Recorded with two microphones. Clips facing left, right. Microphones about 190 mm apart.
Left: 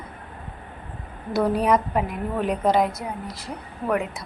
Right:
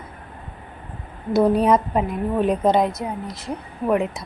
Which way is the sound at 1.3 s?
25° right (ahead or behind).